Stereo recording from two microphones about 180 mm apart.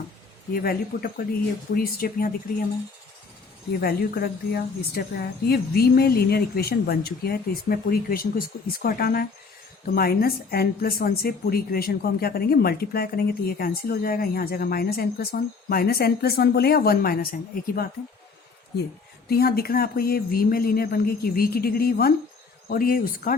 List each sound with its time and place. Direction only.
0.5 s speech: 55° left (ahead or behind)
3.8 s speech: 55° left (ahead or behind)
19.3 s speech: 60° left (ahead or behind)